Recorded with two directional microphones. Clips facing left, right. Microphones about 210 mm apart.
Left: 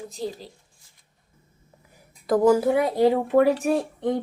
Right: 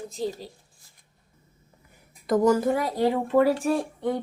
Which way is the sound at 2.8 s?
20° left (ahead or behind).